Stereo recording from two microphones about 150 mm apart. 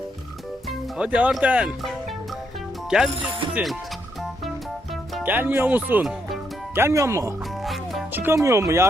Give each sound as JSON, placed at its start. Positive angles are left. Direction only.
{"t": 0.7, "sound": "speech", "side_deg": -5}
{"t": 3.5, "sound": "speech", "side_deg": 0}
{"t": 5.2, "sound": "speech", "side_deg": -10}
{"t": 6.7, "sound": "speech", "side_deg": -20}
{"t": 7.6, "sound": "music", "side_deg": 0}
{"t": 8.1, "sound": "music", "side_deg": -15}
{"t": 8.4, "sound": "speech", "side_deg": -20}